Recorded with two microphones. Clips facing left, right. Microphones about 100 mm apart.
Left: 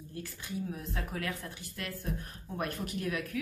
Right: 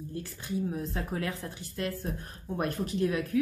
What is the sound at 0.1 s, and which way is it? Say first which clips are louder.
Speech: right 4 dB; 30° right (ahead or behind).